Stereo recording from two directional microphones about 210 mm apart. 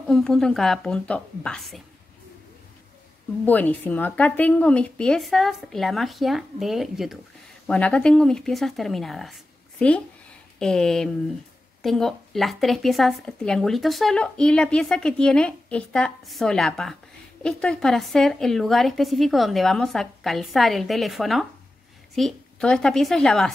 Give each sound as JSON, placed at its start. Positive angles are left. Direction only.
{"t": 0.1, "sound": "speech", "side_deg": 0}
{"t": 3.4, "sound": "speech", "side_deg": 10}